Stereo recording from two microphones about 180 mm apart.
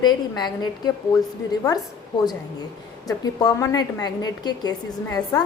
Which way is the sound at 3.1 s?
20° left (ahead or behind).